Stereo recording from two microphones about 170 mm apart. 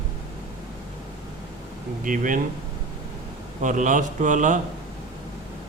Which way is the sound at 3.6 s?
50° right (ahead or behind).